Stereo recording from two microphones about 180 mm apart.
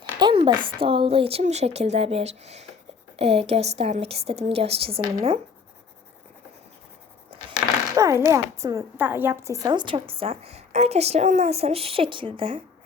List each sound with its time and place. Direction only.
0.2 s speech: 25° right (ahead or behind)
7.9 s a sound: 15° right (ahead or behind)
8.3 s speech: 15° right (ahead or behind)